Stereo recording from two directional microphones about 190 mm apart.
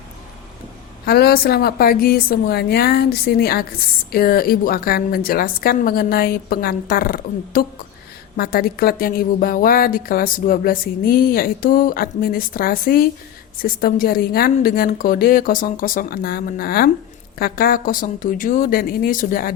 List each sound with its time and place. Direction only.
1.0 s a woman's voice: 55° left (ahead or behind)